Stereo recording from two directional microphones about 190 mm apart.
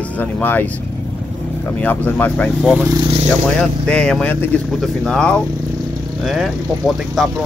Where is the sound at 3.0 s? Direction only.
30° right (ahead or behind).